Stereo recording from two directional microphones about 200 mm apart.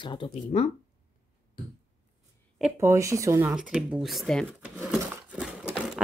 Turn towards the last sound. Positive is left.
turn(degrees=-5)  # may be behind; listen again after turning